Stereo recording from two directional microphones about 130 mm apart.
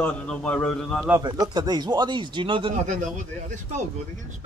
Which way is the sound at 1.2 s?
30° right (ahead or behind).